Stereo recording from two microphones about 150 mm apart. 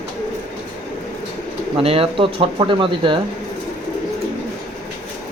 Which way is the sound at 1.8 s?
40° right (ahead or behind).